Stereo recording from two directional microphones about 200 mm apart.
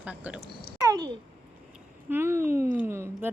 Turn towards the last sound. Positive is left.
turn(degrees=-10)  # may be behind; listen again after turning